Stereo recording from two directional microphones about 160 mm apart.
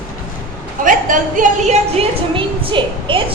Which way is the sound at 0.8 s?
55° right (ahead or behind).